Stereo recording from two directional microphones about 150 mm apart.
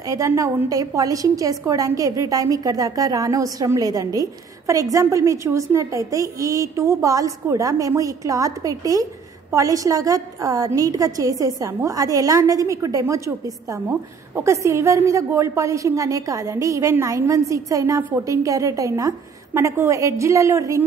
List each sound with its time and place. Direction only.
0.1 s a woman's voice: 20° right (ahead or behind)